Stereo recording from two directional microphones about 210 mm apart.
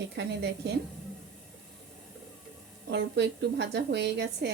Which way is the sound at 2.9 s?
55° right (ahead or behind).